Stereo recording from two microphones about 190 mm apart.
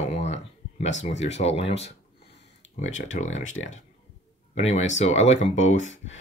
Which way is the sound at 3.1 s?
40° left (ahead or behind).